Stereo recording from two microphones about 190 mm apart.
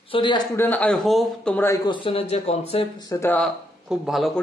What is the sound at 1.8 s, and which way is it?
Speech, 25° left (ahead or behind).